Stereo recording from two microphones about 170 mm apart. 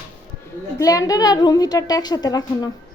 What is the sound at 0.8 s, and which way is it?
A woman's voice, 20° left (ahead or behind).